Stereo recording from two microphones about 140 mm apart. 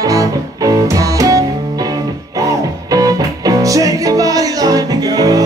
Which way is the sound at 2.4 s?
25° right (ahead or behind).